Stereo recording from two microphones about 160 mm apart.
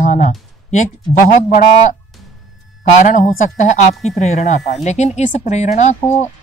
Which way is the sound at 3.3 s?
50° left (ahead or behind).